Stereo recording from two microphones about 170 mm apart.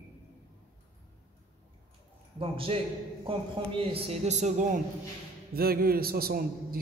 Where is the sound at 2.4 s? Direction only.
35° right (ahead or behind).